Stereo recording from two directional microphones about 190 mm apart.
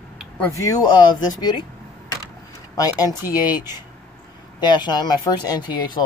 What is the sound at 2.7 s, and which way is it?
Speech, 20° left (ahead or behind).